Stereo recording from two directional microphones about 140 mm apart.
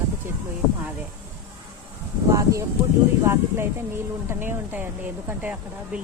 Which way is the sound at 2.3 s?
20° right (ahead or behind).